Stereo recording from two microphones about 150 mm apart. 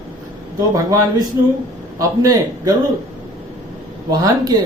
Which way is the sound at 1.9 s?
25° right (ahead or behind).